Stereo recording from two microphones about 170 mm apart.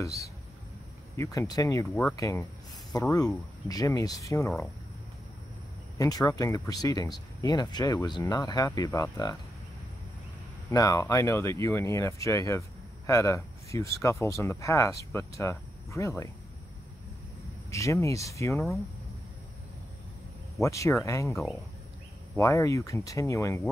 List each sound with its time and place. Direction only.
1.1 s speech: 15° left (ahead or behind)
5.9 s speech: 20° left (ahead or behind)
10.7 s speech: 20° left (ahead or behind)
17.6 s speech: 20° left (ahead or behind)
20.6 s speech: 15° left (ahead or behind)
22.4 s speech: 20° left (ahead or behind)